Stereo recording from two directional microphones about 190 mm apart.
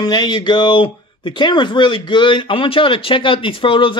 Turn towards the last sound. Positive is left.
turn(degrees=25)  # may be behind; listen again after turning